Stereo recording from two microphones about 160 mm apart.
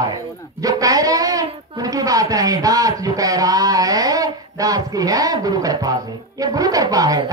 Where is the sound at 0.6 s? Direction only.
20° right (ahead or behind).